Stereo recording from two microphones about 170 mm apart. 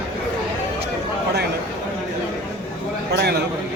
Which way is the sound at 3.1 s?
75° right (ahead or behind).